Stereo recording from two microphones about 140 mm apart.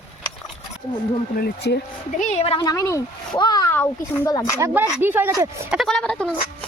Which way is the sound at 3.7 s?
15° left (ahead or behind).